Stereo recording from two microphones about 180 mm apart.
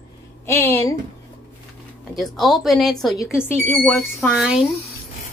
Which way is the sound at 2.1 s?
Centre (ahead or behind).